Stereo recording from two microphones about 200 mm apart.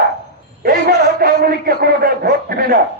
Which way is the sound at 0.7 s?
50° right (ahead or behind).